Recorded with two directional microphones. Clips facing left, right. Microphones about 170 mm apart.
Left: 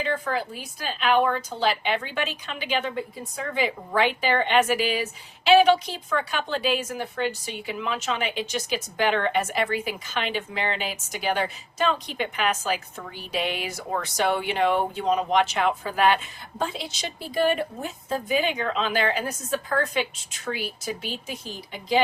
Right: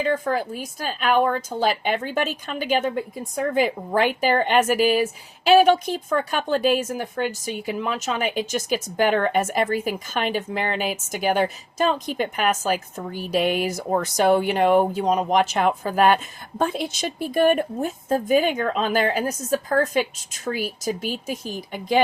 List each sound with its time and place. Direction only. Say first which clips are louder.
0.0 s a woman's voice: right 4 dB; 45° right (ahead or behind)